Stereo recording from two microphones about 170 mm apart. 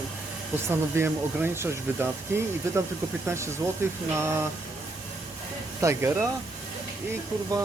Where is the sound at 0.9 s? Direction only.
15° right (ahead or behind).